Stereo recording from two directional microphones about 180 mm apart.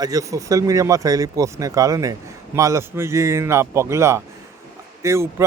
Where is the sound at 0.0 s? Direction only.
20° right (ahead or behind).